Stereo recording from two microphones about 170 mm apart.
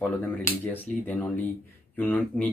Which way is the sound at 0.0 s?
10° left (ahead or behind).